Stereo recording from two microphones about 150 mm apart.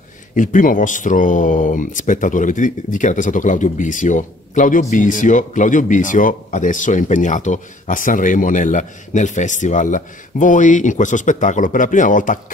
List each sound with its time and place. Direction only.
0.4 s speech: 60° left (ahead or behind)